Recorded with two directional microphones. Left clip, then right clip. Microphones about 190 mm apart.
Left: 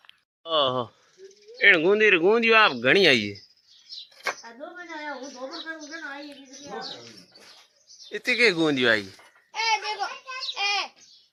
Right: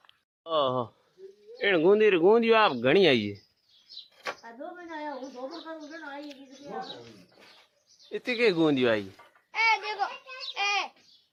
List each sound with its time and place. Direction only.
0.4 s speech: 5° right (ahead or behind)
5.5 s bird: 10° right (ahead or behind)
8.1 s speech: 5° right (ahead or behind)
9.5 s laughter: 25° left (ahead or behind)
10.5 s babbling: 10° left (ahead or behind)